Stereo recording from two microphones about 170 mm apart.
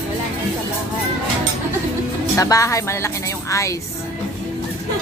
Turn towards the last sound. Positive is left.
turn(degrees=20)  # may be behind; listen again after turning